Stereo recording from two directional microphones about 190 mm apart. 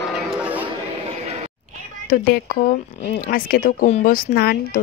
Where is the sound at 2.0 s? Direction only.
50° left (ahead or behind).